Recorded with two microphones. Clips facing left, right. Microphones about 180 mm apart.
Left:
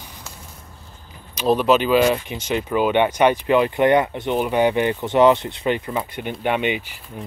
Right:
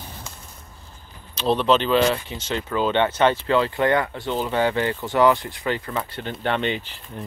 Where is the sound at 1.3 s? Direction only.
10° left (ahead or behind).